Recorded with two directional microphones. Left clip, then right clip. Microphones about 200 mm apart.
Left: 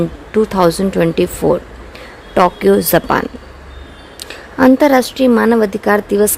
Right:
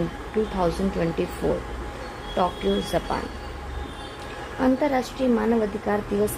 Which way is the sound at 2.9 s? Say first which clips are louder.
Left 13 dB; 55° left (ahead or behind).